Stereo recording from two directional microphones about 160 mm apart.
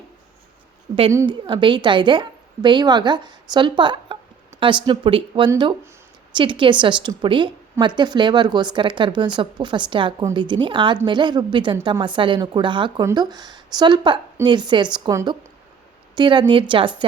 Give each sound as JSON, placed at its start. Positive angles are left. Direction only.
{"t": 1.3, "sound": "a woman's voice", "side_deg": -30}